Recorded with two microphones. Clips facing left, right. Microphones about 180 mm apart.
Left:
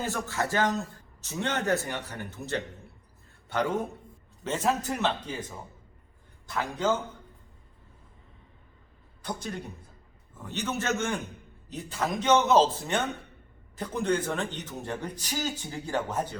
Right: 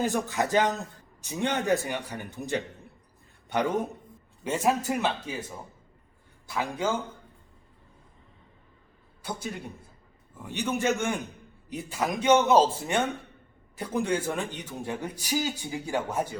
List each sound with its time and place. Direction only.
0.0 s speech: 15° right (ahead or behind)
6.5 s speech: 10° right (ahead or behind)
9.2 s speech: 10° right (ahead or behind)
10.4 s speech: 10° right (ahead or behind)